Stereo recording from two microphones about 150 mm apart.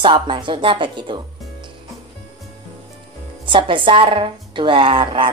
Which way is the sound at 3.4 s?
35° right (ahead or behind).